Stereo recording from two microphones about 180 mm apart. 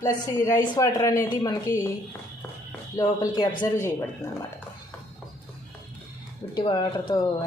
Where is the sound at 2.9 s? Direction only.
20° left (ahead or behind).